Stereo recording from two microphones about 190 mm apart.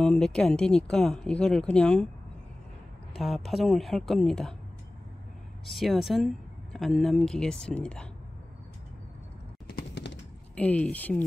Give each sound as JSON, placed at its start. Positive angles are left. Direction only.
{"t": 0.0, "sound": "speech", "side_deg": 5}
{"t": 3.2, "sound": "speech", "side_deg": 0}
{"t": 5.7, "sound": "speech", "side_deg": 0}
{"t": 9.7, "sound": "a sound", "side_deg": 60}
{"t": 10.5, "sound": "speech", "side_deg": 5}